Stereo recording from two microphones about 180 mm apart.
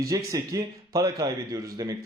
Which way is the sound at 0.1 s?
20° right (ahead or behind).